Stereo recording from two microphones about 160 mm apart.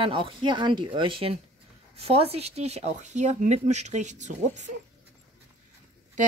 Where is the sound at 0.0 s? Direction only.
30° right (ahead or behind); by 4.7 s 50° right (ahead or behind).